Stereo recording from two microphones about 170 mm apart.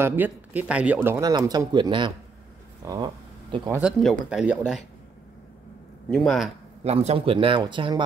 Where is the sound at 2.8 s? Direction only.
25° right (ahead or behind).